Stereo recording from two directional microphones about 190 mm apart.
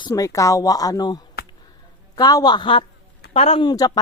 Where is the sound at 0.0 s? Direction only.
15° left (ahead or behind).